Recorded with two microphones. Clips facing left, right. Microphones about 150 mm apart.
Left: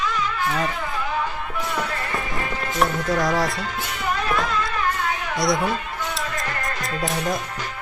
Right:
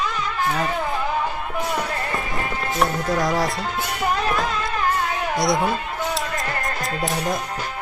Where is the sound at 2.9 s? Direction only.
20° right (ahead or behind).